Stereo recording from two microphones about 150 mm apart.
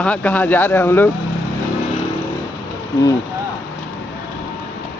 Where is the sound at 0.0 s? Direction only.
10° left (ahead or behind).